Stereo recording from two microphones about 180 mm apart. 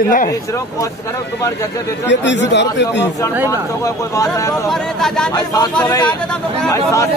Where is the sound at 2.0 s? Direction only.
80° left.